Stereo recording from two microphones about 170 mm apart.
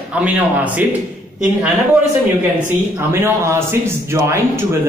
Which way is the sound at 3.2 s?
15° right (ahead or behind).